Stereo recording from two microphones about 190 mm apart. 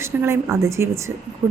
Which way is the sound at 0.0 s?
15° right (ahead or behind).